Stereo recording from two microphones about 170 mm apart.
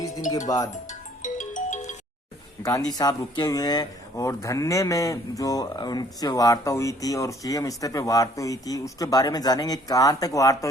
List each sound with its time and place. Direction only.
0.4 s speech: 20° left (ahead or behind)
0.7 s music: 45° left (ahead or behind)
2.6 s speech: 20° left (ahead or behind)